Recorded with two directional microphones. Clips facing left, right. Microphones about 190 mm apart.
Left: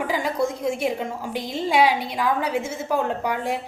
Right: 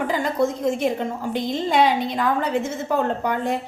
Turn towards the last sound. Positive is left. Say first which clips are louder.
# right 2 dB
turn(degrees=10)  # may be behind; listen again after turning